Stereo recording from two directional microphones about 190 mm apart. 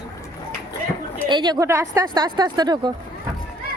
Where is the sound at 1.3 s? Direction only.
25° right (ahead or behind).